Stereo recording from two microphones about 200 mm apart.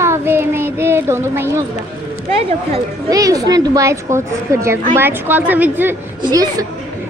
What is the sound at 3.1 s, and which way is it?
Speech, 15° right (ahead or behind).